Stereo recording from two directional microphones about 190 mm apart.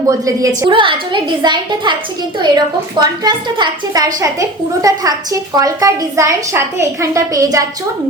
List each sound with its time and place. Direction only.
0.0 s a woman's voice: 20° right (ahead or behind)
3.0 s a woman's voice: 20° right (ahead or behind)